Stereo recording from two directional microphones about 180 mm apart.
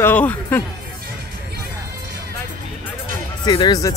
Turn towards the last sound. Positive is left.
turn(degrees=20)  # may be behind; listen again after turning